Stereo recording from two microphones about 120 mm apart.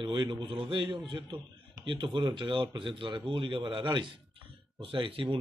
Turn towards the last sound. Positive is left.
turn(degrees=-45)  # may be behind; listen again after turning